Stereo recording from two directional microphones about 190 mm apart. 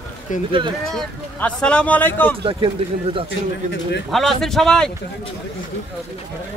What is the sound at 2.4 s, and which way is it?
Speech, 25° right (ahead or behind).